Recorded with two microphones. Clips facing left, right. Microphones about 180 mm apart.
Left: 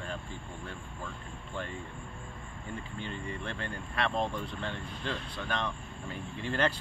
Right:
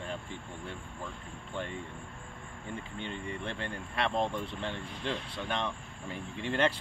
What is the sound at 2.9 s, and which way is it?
Speech, 25° right (ahead or behind).